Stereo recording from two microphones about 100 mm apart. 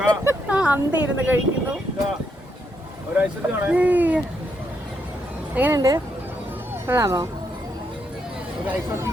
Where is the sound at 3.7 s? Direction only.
15° right (ahead or behind).